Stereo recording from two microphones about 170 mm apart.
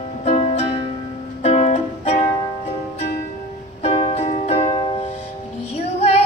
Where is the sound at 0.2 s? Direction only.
40° left (ahead or behind).